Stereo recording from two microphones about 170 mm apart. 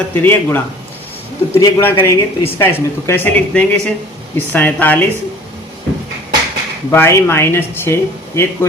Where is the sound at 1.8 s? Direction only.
15° left (ahead or behind).